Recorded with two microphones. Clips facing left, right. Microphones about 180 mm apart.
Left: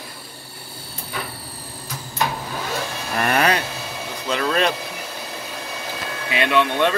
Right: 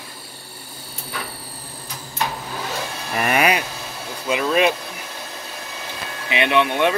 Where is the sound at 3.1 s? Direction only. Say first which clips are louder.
Even; 5° right (ahead or behind).